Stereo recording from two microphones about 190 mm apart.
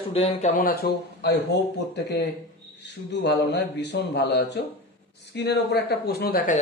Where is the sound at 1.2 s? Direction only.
60° left (ahead or behind).